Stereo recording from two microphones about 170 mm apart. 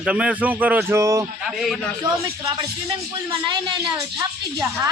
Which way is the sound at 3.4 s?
25° right (ahead or behind).